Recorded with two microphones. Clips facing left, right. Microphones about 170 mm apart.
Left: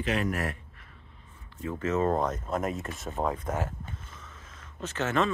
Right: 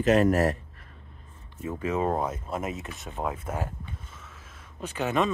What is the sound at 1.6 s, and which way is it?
Speech, 10° right (ahead or behind).